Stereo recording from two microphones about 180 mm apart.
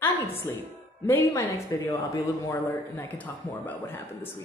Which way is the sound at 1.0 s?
15° left (ahead or behind).